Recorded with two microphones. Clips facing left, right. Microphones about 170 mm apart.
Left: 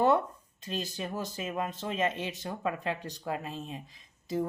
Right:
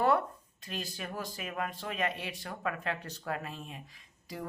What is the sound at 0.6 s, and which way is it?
Speech, 20° left (ahead or behind).